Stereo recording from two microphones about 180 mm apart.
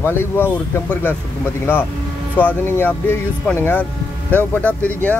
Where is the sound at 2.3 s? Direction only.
10° left (ahead or behind).